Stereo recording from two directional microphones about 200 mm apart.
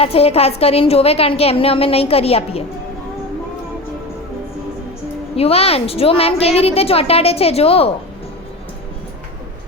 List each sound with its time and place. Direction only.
0.0 s a woman's voice: 30° left (ahead or behind)
5.4 s a woman's voice: 30° left (ahead or behind)